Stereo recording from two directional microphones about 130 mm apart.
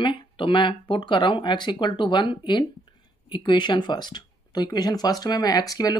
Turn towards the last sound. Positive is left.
turn(degrees=30)  # may be behind; listen again after turning